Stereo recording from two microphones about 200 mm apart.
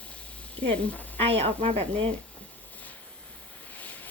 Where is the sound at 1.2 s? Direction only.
30° right (ahead or behind).